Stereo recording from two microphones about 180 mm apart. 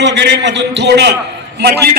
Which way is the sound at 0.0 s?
75° right (ahead or behind).